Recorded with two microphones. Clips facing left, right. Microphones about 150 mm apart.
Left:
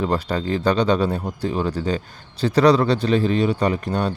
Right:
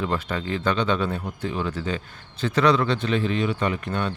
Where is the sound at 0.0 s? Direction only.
35° left (ahead or behind).